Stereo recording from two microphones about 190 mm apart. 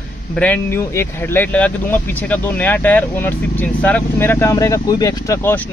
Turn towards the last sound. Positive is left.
turn(degrees=15)  # may be behind; listen again after turning